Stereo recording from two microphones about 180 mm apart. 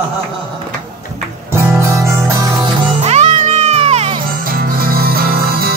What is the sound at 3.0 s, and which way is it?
Music, 40° right (ahead or behind).